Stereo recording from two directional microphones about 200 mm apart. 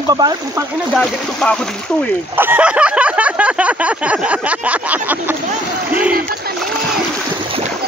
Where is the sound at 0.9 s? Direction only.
Centre (ahead or behind).